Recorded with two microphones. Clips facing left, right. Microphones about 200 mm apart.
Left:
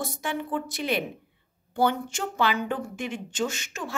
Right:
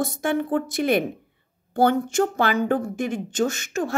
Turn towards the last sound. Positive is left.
turn(degrees=-45)  # may be behind; listen again after turning